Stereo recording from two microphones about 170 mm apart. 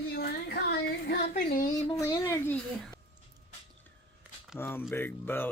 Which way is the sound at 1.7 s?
25° left (ahead or behind).